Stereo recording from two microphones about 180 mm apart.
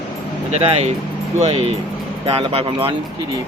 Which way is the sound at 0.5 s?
35° right (ahead or behind).